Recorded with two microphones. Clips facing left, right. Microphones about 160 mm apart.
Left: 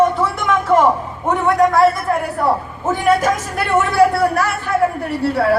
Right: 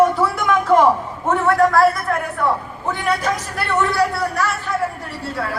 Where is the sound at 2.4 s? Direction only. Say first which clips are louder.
Left 3 dB; 45° left (ahead or behind).